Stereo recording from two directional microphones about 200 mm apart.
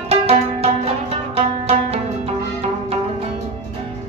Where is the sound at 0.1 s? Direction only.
30° right (ahead or behind).